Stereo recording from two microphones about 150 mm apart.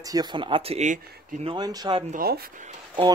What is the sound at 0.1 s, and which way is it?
Speech, 30° right (ahead or behind).